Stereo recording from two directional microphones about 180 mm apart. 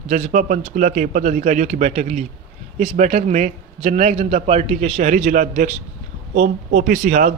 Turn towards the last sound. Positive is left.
turn(degrees=-45)  # may be behind; listen again after turning